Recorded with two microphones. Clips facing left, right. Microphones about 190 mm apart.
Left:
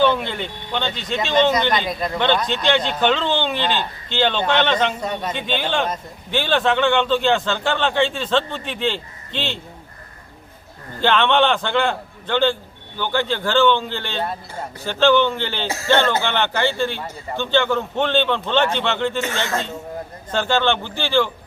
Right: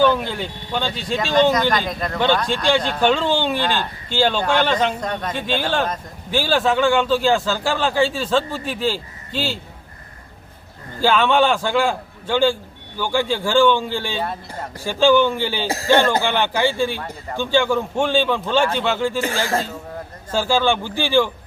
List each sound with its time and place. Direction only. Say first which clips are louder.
0.0 s speech: right 1 dB; 5° right (ahead or behind)
1.2 s speech: right 1 dB; 20° left (ahead or behind)
1.5 s a man's voice: right 1 dB; 5° right (ahead or behind)
1.9 s speech: left 1 dB; 5° left (ahead or behind)
2.7 s a man's voice: right 2 dB; 5° right (ahead or behind)
4.9 s speech: even; 10° left (ahead or behind)
5.3 s a man's voice: right 2 dB; 10° right (ahead or behind)
11.0 s a man's voice: right 1 dB; 5° right (ahead or behind)
20.3 s a man's voice: right 1 dB; 5° right (ahead or behind)